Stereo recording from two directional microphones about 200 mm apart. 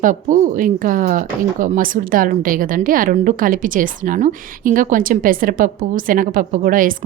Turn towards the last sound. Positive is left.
turn(degrees=-45)  # may be behind; listen again after turning